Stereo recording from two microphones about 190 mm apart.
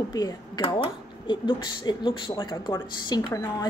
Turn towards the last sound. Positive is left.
turn(degrees=15)  # may be behind; listen again after turning